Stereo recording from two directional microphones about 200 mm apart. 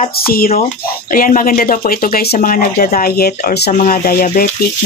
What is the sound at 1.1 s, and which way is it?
Speech, 45° left (ahead or behind).